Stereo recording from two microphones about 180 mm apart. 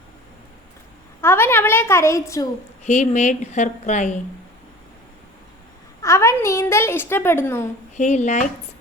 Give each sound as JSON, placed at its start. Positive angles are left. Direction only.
{"t": 1.2, "sound": "a woman's voice", "side_deg": 15}
{"t": 2.8, "sound": "a woman's voice", "side_deg": 40}
{"t": 6.0, "sound": "a woman's voice", "side_deg": 15}
{"t": 7.9, "sound": "a woman's voice", "side_deg": 40}